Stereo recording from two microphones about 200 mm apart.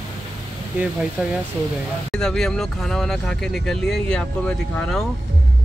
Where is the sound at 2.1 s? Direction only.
5° left (ahead or behind).